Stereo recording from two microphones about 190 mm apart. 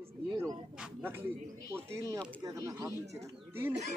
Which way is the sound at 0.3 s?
20° right (ahead or behind).